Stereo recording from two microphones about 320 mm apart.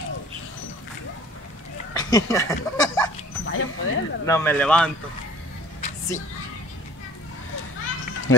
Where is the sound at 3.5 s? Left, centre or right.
Left.